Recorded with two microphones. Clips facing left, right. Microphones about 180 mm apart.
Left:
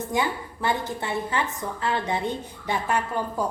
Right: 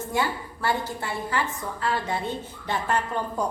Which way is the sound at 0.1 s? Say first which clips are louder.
Even; 20° left (ahead or behind).